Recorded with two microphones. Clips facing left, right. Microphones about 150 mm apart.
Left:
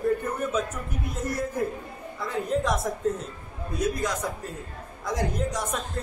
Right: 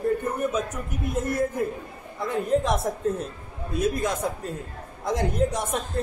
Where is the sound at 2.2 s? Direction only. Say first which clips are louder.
Right 3 dB; 25° right (ahead or behind).